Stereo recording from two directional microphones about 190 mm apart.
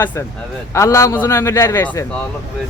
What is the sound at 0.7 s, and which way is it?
A man's voice, 15° left (ahead or behind).